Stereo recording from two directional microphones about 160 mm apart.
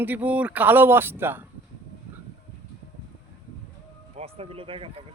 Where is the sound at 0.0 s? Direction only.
10° right (ahead or behind).